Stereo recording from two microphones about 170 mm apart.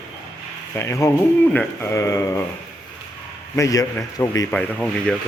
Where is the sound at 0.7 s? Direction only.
15° left (ahead or behind).